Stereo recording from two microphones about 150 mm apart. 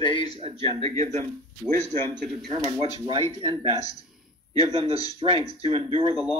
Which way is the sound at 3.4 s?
35° right (ahead or behind).